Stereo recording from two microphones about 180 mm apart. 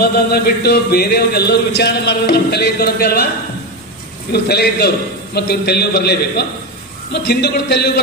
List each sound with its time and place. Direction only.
0.0 s a man's voice: 60° left (ahead or behind)
4.3 s a man's voice: 65° left (ahead or behind)